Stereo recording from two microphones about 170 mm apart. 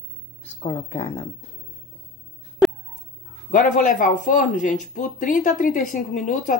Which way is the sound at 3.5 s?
50° left (ahead or behind).